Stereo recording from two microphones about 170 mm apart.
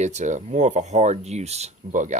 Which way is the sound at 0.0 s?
45° right (ahead or behind).